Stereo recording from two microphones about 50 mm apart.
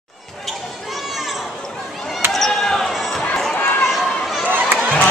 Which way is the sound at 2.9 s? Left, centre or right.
Centre.